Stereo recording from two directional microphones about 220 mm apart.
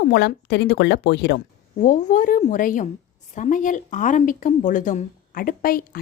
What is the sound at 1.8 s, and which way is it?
A woman's voice, 35° left (ahead or behind).